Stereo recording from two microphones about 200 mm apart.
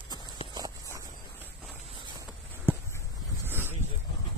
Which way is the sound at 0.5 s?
20° right (ahead or behind).